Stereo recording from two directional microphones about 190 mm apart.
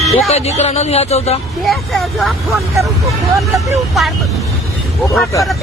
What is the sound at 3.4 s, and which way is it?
Speech, 15° right (ahead or behind).